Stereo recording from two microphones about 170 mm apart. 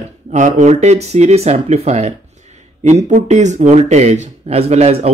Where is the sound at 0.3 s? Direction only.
45° right (ahead or behind).